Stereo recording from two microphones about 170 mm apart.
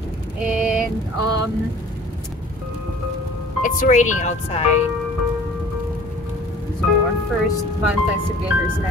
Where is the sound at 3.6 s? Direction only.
50° left (ahead or behind).